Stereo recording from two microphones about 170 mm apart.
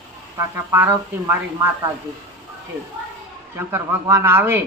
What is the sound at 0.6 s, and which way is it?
Speech, 15° right (ahead or behind).